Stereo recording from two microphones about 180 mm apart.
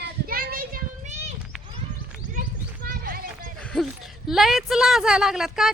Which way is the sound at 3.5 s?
5° left (ahead or behind).